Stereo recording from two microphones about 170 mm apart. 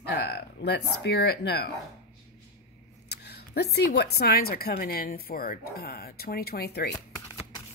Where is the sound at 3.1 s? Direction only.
75° left (ahead or behind).